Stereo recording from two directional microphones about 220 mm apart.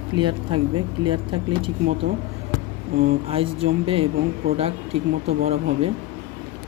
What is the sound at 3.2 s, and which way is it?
Speech, 25° right (ahead or behind).